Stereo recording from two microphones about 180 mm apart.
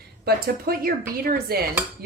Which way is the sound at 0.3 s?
55° right (ahead or behind).